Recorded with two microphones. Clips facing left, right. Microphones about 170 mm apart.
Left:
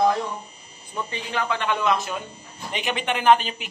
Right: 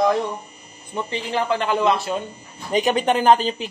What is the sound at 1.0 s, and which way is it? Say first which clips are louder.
A man's voice: right 5 dB; 30° right (ahead or behind).